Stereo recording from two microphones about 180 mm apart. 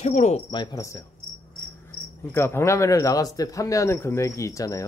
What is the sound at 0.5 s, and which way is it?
Speech, 15° left (ahead or behind).